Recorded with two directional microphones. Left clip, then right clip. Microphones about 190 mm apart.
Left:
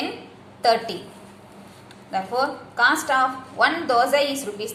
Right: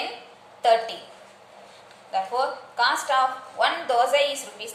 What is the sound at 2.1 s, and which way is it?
A woman's voice, 20° left (ahead or behind).